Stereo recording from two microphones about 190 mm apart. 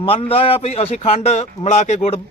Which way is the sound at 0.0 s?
30° left (ahead or behind).